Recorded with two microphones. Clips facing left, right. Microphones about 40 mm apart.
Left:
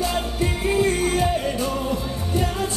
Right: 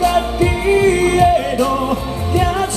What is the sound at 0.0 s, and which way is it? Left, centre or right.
Music, right.